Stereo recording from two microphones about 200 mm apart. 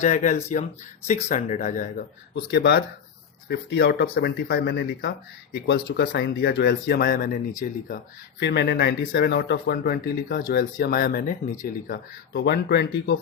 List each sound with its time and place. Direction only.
0.0 s speech: 40° left (ahead or behind)
2.3 s speech: 55° left (ahead or behind)
8.4 s speech: 55° left (ahead or behind)
11.9 s speech: 60° left (ahead or behind)